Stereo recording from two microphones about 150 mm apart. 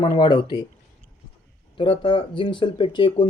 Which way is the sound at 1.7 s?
35° left (ahead or behind).